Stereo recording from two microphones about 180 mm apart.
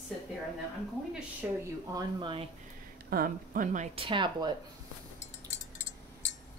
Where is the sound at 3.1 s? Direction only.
50° right (ahead or behind).